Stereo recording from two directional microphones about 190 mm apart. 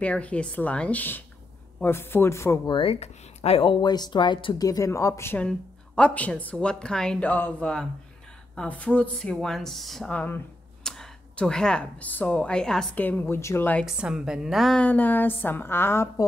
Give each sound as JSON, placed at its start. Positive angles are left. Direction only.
{"t": 0.0, "sound": "speech", "side_deg": 5}
{"t": 13.8, "sound": "speech", "side_deg": -5}